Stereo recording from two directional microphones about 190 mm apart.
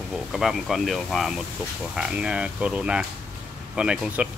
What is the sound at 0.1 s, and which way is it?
Speech, centre (ahead or behind).